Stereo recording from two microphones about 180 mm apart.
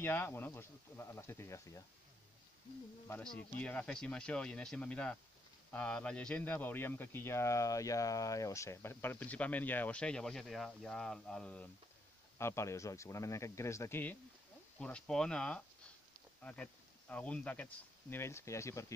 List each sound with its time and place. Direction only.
0.0 s speech: 10° left (ahead or behind)
3.1 s speech: 5° left (ahead or behind)